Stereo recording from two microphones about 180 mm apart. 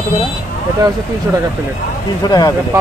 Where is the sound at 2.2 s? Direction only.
20° left (ahead or behind).